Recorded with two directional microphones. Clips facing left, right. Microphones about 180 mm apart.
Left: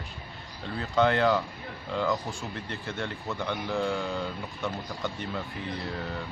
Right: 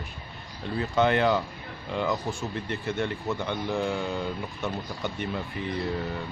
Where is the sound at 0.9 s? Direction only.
15° right (ahead or behind).